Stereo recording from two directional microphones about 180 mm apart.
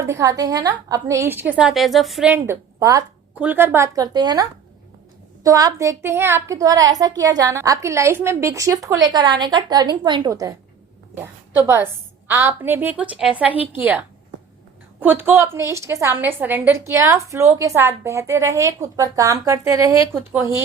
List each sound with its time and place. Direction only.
0.0 s a woman's voice: 15° right (ahead or behind)
15.0 s a woman's voice: 10° right (ahead or behind)